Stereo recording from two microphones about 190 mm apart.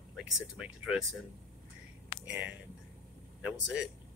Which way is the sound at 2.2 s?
5° right (ahead or behind).